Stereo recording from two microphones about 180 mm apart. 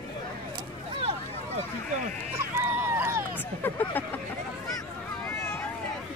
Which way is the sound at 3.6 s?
10° left (ahead or behind).